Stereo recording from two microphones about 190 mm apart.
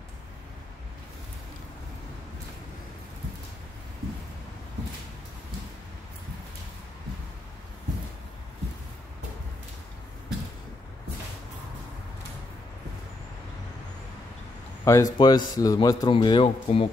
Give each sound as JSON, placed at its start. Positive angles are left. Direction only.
{"t": 14.9, "sound": "a man's voice", "side_deg": 20}